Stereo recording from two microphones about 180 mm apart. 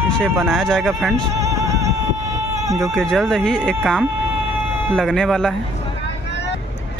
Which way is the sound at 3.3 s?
5° left (ahead or behind).